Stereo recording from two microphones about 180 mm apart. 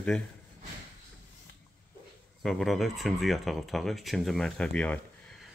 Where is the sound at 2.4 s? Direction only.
Centre (ahead or behind).